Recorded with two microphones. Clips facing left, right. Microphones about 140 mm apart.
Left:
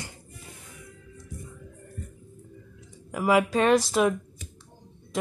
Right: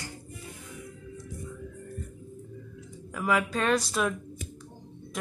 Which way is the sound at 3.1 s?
25° left (ahead or behind).